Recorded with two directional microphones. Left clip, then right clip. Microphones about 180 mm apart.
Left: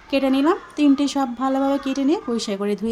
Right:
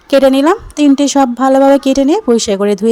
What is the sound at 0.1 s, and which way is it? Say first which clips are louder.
A woman's voice: right 11 dB; 45° right (ahead or behind).